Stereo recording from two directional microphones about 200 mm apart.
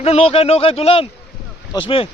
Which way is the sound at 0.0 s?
30° left (ahead or behind).